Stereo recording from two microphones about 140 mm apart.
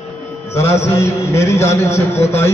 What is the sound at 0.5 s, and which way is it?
A man's voice, 20° left (ahead or behind).